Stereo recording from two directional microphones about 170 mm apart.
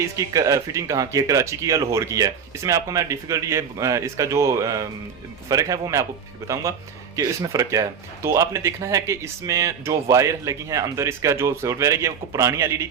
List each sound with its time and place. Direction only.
0.2 s speech: 20° right (ahead or behind)